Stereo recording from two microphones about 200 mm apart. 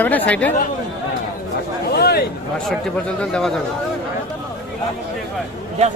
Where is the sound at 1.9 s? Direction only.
50° left (ahead or behind).